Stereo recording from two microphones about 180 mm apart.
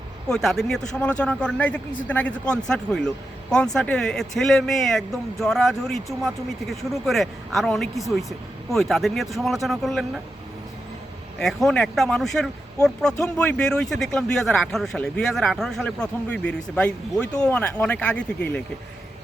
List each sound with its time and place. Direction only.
0.3 s speech: centre (ahead or behind)
11.3 s speech: 5° left (ahead or behind)